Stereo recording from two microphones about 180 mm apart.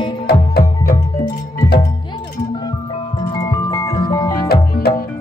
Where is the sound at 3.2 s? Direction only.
25° left (ahead or behind).